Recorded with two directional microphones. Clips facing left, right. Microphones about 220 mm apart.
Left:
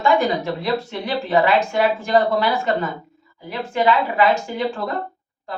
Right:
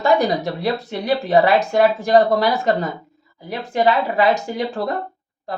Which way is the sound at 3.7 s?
35° right (ahead or behind).